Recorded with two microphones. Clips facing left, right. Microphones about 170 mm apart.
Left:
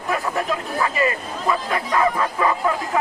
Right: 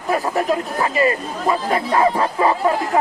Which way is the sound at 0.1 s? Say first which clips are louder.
Right 4 dB; 35° right (ahead or behind).